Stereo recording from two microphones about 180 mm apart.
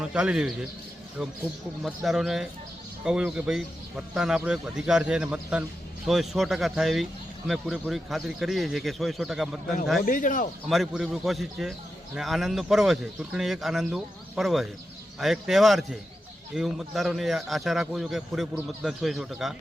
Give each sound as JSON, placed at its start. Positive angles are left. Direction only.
{"t": 0.0, "sound": "speech", "side_deg": -5}
{"t": 1.8, "sound": "speech", "side_deg": 0}
{"t": 10.1, "sound": "speech", "side_deg": 45}
{"t": 10.7, "sound": "speech", "side_deg": 0}